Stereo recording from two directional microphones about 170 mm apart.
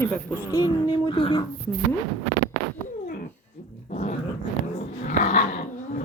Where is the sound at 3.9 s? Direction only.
40° left (ahead or behind).